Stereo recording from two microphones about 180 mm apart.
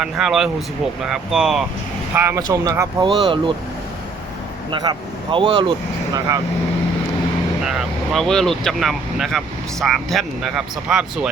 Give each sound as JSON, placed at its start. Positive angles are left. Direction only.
{"t": 0.0, "sound": "speech", "side_deg": 0}
{"t": 2.1, "sound": "speech", "side_deg": -15}
{"t": 4.7, "sound": "speech", "side_deg": -25}
{"t": 7.6, "sound": "speech", "side_deg": -5}